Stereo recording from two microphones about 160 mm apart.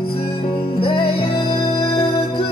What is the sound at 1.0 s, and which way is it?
Music, 75° left (ahead or behind).